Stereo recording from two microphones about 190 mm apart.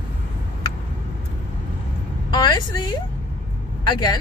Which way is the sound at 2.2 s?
25° left (ahead or behind).